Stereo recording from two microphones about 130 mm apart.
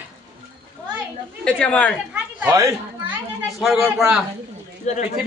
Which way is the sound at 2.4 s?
25° right (ahead or behind).